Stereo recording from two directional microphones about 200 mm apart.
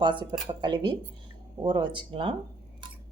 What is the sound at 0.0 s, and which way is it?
Speech, 25° right (ahead or behind).